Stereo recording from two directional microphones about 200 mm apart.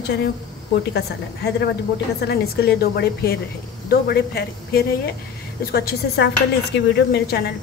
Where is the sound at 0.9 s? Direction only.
55° left (ahead or behind).